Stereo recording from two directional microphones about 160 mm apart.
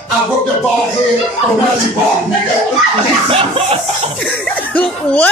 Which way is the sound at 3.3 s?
35° right (ahead or behind).